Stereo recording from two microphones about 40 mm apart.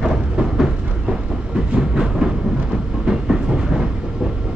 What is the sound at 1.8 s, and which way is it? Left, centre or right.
Train, centre.